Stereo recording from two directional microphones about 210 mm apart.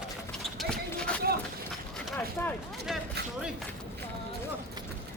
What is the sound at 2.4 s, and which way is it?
Speech, 10° left (ahead or behind).